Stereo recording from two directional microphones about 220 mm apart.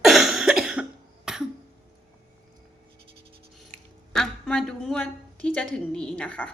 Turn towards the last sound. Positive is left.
turn(degrees=5)  # may be behind; listen again after turning